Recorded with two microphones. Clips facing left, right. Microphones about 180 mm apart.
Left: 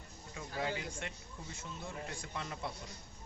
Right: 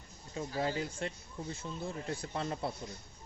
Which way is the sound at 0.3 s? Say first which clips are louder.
Right 5 dB; 35° right (ahead or behind).